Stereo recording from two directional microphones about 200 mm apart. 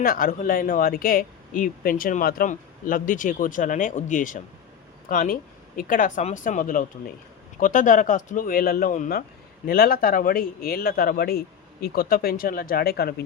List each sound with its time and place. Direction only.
0.0 s speech: 45° left (ahead or behind)